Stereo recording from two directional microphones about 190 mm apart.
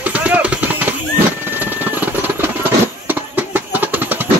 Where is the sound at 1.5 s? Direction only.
10° right (ahead or behind).